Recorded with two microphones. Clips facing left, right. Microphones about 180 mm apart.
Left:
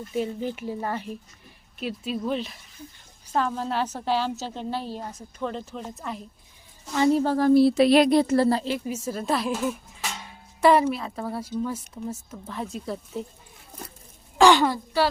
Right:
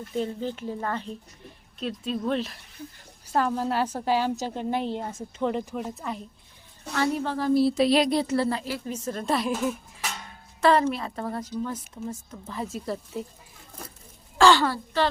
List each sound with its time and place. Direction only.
0.1 s a woman's voice: 10° left (ahead or behind); by 5.8 s 15° right (ahead or behind)
5.9 s speech: centre (ahead or behind)
7.2 s speech: 40° left (ahead or behind)
7.4 s speech: 60° left (ahead or behind); by 8.6 s 40° left (ahead or behind)
8.8 s speech: 10° left (ahead or behind)
10.6 s a woman's voice: 10° left (ahead or behind)
10.9 s speech: centre (ahead or behind)
14.3 s a sound: 15° left (ahead or behind)